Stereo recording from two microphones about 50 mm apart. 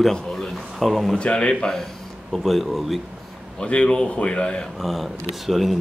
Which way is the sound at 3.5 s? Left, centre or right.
Left.